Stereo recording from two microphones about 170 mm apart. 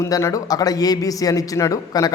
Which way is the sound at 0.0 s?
15° left (ahead or behind).